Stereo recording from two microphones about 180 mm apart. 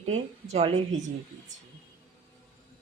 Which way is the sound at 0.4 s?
35° right (ahead or behind).